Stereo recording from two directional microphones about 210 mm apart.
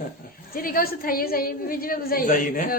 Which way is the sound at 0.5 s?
45° left (ahead or behind).